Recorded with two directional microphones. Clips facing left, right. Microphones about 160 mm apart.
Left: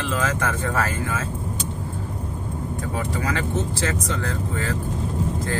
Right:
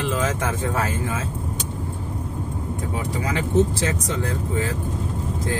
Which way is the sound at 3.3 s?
15° right (ahead or behind).